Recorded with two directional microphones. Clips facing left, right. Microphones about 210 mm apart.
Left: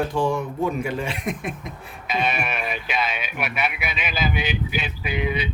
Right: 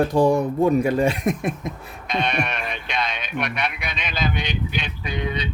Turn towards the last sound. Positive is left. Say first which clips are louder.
# left 2 dB
turn(degrees=5)  # may be behind; listen again after turning